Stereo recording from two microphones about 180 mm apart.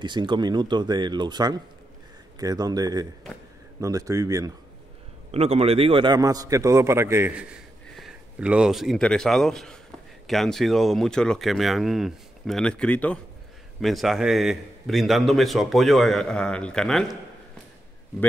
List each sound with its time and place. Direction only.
0.0 s a man's voice: 25° right (ahead or behind)
5.3 s a man's voice: 35° right (ahead or behind); by 17.2 s 5° left (ahead or behind)